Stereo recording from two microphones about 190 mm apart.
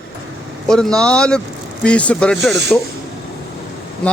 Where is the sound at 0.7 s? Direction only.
5° left (ahead or behind).